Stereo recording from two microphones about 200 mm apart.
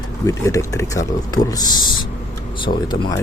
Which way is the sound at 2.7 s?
40° left (ahead or behind).